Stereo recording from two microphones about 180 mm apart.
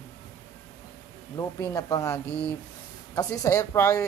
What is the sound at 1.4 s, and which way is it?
Speech, 20° left (ahead or behind).